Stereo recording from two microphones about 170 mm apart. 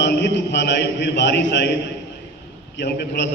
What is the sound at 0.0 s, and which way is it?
A man's voice, 90° left.